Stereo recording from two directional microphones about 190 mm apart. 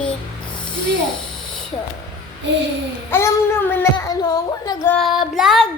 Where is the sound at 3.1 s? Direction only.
10° left (ahead or behind).